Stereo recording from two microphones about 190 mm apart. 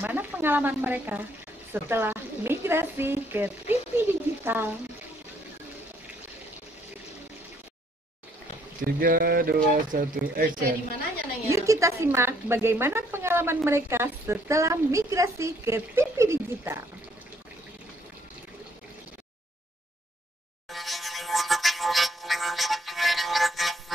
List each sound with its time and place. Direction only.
0.0 s a woman's voice: 10° right (ahead or behind)
8.8 s speech: 50° right (ahead or behind)
11.5 s a woman's voice: 15° right (ahead or behind)
20.7 s music: centre (ahead or behind)